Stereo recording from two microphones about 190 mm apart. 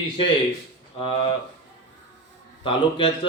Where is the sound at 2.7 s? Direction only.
25° left (ahead or behind).